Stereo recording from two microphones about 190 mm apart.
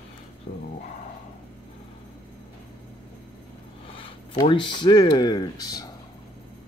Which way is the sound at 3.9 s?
30° left (ahead or behind).